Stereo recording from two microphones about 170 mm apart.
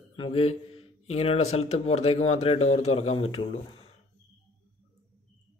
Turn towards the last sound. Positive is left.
turn(degrees=35)  # may be behind; listen again after turning